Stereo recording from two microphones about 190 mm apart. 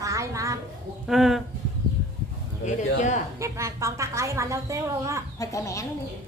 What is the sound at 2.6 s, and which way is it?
Speech, 40° left (ahead or behind).